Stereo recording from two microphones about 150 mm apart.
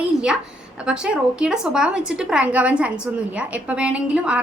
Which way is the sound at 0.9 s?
5° right (ahead or behind).